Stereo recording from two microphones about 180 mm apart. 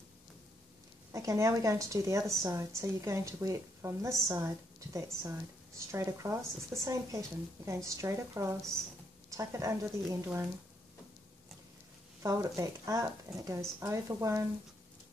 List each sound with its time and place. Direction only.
1.1 s a woman's voice: 15° right (ahead or behind)
12.2 s a woman's voice: 15° right (ahead or behind)